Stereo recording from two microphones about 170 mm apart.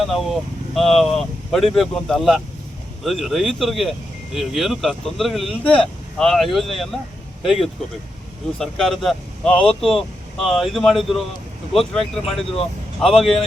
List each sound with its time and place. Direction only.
0.0 s speech: centre (ahead or behind)